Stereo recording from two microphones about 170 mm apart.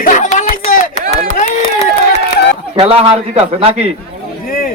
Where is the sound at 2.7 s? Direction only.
35° right (ahead or behind).